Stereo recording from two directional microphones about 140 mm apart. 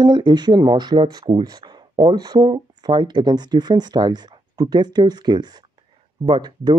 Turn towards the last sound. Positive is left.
turn(degrees=-35)  # may be behind; listen again after turning